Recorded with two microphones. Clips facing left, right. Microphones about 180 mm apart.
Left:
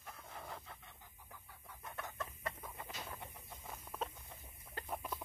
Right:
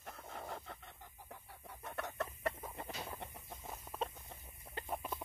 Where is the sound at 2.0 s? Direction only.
65° right (ahead or behind).